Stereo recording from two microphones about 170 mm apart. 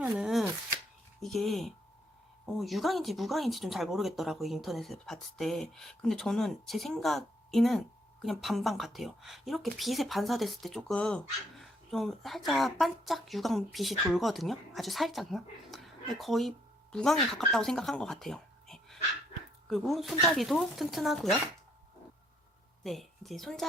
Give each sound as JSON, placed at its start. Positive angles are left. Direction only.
{"t": 0.0, "sound": "shuffling cards", "side_deg": -5}
{"t": 1.2, "sound": "speech", "side_deg": 0}
{"t": 22.8, "sound": "a woman's voice", "side_deg": 0}